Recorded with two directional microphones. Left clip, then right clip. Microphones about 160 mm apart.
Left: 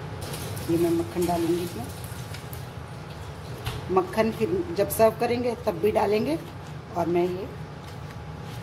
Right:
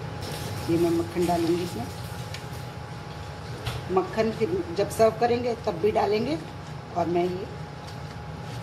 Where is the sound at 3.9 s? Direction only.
25° left (ahead or behind).